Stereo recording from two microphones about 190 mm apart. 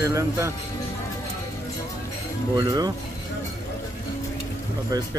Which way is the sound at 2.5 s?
20° right (ahead or behind).